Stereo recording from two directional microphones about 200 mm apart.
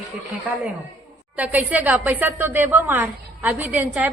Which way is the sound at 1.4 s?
10° right (ahead or behind).